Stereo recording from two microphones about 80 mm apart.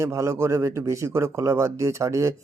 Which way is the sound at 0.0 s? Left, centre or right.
Right.